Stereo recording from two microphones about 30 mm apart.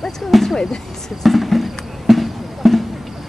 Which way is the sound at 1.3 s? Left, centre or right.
Centre.